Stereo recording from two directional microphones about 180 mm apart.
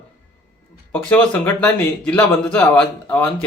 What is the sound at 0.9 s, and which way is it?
Speech, 10° left (ahead or behind).